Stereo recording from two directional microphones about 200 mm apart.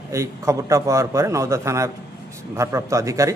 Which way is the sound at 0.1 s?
15° right (ahead or behind).